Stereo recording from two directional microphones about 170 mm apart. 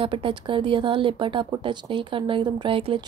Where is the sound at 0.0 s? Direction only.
30° right (ahead or behind).